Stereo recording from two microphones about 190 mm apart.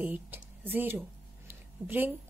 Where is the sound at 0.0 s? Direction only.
10° right (ahead or behind).